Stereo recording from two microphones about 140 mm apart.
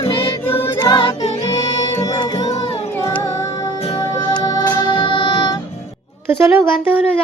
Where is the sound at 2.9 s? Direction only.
20° left (ahead or behind).